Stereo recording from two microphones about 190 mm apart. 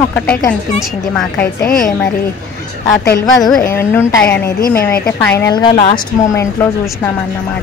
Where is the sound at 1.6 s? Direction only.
45° left (ahead or behind).